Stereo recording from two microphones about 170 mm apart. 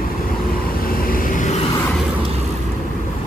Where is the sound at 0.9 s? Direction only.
55° left (ahead or behind).